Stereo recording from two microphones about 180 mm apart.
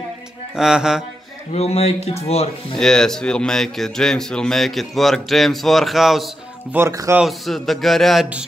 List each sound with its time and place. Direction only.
0.6 s a man's voice: 5° right (ahead or behind)
1.5 s speech: 35° left (ahead or behind)
2.8 s a man's voice: 5° left (ahead or behind)
6.7 s speech: 15° right (ahead or behind)
7.2 s a man's voice: centre (ahead or behind)